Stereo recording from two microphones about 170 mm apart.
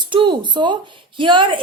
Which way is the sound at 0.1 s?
30° right (ahead or behind).